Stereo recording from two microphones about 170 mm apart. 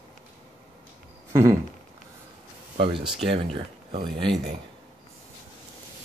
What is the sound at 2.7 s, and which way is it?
Speech, 30° right (ahead or behind).